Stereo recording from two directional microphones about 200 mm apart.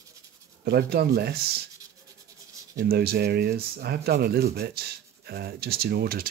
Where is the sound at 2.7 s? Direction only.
50° right (ahead or behind).